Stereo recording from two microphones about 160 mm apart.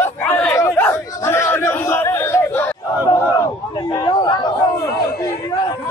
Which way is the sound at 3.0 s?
20° left (ahead or behind).